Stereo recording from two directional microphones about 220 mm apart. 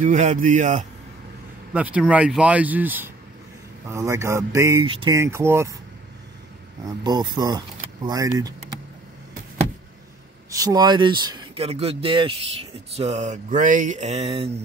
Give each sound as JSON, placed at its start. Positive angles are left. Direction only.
{"t": 0.0, "sound": "speech", "side_deg": -35}
{"t": 1.7, "sound": "speech", "side_deg": -5}
{"t": 6.9, "sound": "speech", "side_deg": -20}
{"t": 10.5, "sound": "speech", "side_deg": -15}